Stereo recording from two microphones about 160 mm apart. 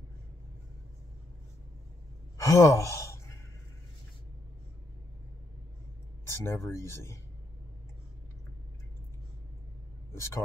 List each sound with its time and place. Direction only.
2.3 s sigh: 20° left (ahead or behind)
6.2 s speech: 15° left (ahead or behind)
10.1 s speech: 15° left (ahead or behind)